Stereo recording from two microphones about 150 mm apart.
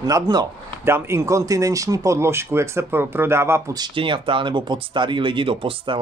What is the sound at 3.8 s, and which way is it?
Speech, 35° right (ahead or behind).